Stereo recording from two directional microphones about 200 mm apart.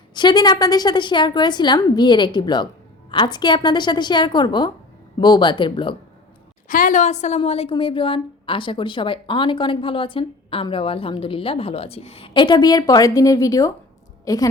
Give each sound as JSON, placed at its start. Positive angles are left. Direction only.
{"t": 0.1, "sound": "a woman's voice", "side_deg": 20}
{"t": 6.7, "sound": "a woman's voice", "side_deg": 45}